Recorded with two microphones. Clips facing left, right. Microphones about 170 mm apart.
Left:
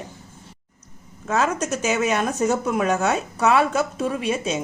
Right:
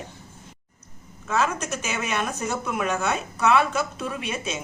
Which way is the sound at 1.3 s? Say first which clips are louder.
Left 3 dB; 40° left (ahead or behind).